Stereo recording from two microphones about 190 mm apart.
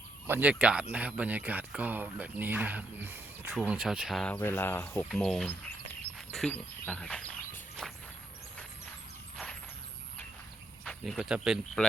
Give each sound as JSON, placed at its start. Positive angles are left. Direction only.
{"t": 0.3, "sound": "speech", "side_deg": -10}
{"t": 7.8, "sound": "walk", "side_deg": 5}
{"t": 10.8, "sound": "speech", "side_deg": 0}